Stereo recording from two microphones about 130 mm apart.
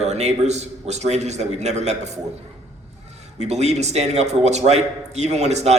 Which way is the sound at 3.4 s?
60° right (ahead or behind).